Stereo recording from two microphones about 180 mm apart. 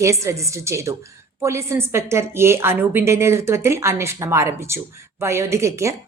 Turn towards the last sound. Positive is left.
turn(degrees=-15)  # may be behind; listen again after turning